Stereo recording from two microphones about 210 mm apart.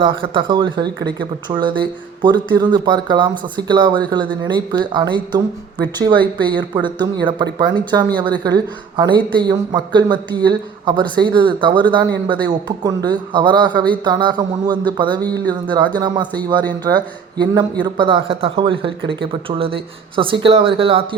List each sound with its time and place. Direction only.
0.0 s a man's voice: 25° right (ahead or behind)
17.3 s a man's voice: 20° right (ahead or behind)